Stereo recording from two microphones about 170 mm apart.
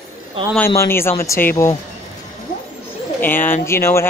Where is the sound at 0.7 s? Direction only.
15° left (ahead or behind).